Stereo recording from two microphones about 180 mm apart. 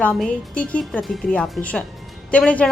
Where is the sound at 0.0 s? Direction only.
5° left (ahead or behind).